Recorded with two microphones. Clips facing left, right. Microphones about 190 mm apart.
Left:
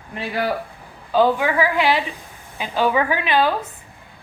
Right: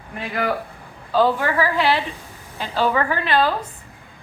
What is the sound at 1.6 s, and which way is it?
A woman's voice, 15° left (ahead or behind).